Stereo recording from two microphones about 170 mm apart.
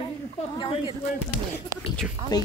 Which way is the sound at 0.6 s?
30° left (ahead or behind).